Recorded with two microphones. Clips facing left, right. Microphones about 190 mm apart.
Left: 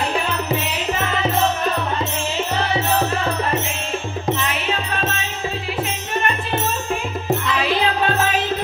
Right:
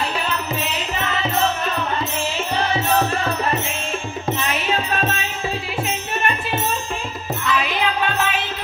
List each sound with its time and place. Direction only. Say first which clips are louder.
7.4 s music: right 3 dB; 30° left (ahead or behind)